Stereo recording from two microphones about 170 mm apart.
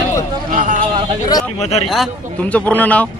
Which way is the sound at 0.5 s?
55° right (ahead or behind).